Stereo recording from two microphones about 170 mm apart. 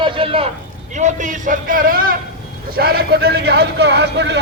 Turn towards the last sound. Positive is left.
turn(degrees=-90)